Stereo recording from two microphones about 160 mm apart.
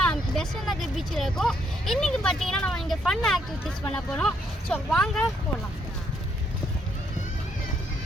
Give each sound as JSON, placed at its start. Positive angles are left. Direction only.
{"t": 0.1, "sound": "speech", "side_deg": 5}